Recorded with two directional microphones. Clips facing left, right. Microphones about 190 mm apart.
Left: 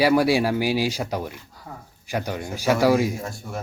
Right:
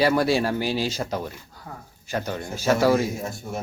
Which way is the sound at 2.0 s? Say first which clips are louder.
Left 1 dB; 10° left (ahead or behind).